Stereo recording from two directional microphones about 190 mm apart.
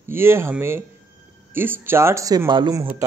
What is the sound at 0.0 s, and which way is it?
Speech, 15° right (ahead or behind).